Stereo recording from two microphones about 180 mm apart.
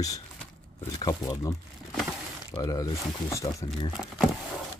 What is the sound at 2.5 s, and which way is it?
Speech, 20° left (ahead or behind).